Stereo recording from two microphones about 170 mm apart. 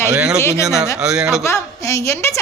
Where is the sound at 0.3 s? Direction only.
15° left (ahead or behind).